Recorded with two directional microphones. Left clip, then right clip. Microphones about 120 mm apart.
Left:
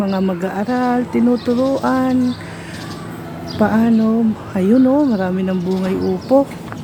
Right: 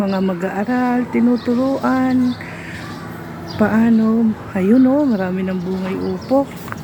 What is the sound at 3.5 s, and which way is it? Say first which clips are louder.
A woman's voice: even; centre (ahead or behind).